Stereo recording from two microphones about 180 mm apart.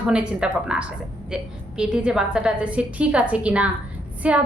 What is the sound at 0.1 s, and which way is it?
A woman's voice, 5° right (ahead or behind).